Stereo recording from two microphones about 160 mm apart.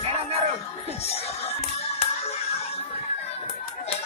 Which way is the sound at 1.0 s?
40° left (ahead or behind).